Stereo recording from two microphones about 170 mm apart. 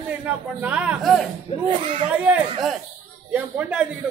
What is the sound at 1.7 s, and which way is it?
Speech, 30° right (ahead or behind).